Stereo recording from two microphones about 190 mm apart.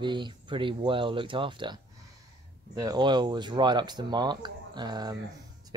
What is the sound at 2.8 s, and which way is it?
Speech, 20° right (ahead or behind).